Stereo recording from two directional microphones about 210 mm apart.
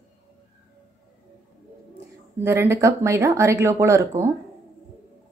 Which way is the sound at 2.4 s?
10° right (ahead or behind).